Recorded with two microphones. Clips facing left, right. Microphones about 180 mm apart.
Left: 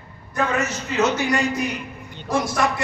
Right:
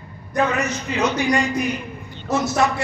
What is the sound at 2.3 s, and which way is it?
Music, 25° right (ahead or behind).